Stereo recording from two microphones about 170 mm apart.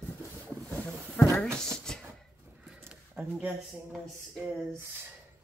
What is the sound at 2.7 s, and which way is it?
Speech, 10° right (ahead or behind).